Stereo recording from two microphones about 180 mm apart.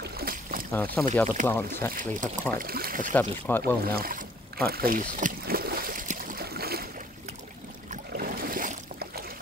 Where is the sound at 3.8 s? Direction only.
55° right (ahead or behind).